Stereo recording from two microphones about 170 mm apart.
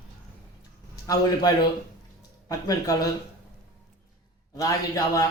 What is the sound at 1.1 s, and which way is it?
A man's voice, 25° left (ahead or behind).